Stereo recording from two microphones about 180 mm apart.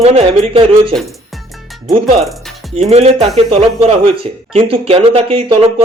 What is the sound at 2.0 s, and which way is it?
Speech, 35° right (ahead or behind).